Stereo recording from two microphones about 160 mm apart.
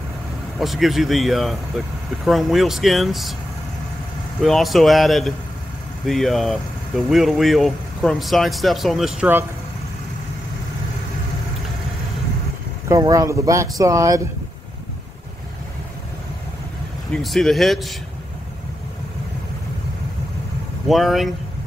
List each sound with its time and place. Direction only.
0.6 s speech: centre (ahead or behind)
4.4 s speech: centre (ahead or behind)
12.8 s speech: 20° right (ahead or behind)
17.1 s speech: centre (ahead or behind)
20.9 s speech: centre (ahead or behind)